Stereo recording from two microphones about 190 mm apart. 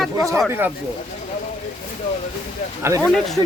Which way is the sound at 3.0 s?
5° left (ahead or behind).